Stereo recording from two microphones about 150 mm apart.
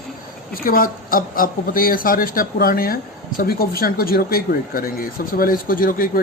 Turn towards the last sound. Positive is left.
turn(degrees=70)  # may be behind; listen again after turning